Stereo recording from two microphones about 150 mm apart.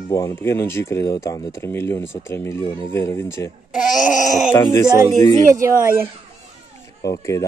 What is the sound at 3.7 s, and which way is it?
Speech, centre (ahead or behind).